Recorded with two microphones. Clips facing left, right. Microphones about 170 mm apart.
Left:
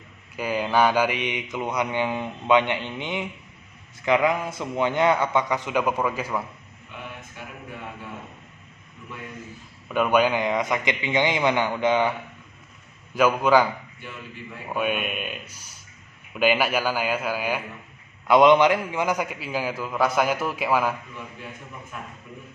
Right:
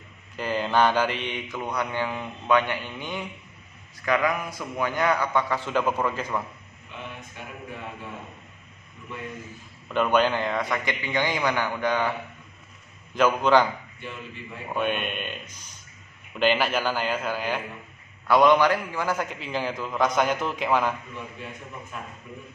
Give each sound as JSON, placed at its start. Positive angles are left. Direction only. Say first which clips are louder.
{"t": 0.4, "sound": "mantra", "louder": "left 1 dB", "side_deg": 10}
{"t": 9.8, "sound": "mantra", "louder": "left 1 dB", "side_deg": 10}
{"t": 13.1, "sound": "a man's voice", "louder": "left 1 dB", "side_deg": 10}
{"t": 18.2, "sound": "a man's voice", "louder": "left 3 dB", "side_deg": 20}